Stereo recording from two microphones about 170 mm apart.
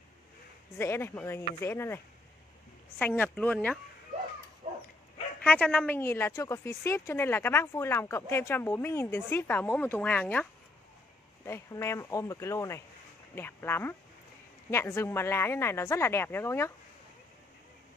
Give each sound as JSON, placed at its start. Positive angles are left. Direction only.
{"t": 0.7, "sound": "a woman's voice", "side_deg": 15}
{"t": 3.0, "sound": "a woman's voice", "side_deg": 10}
{"t": 4.6, "sound": "dog", "side_deg": -35}
{"t": 5.4, "sound": "a woman's voice", "side_deg": 10}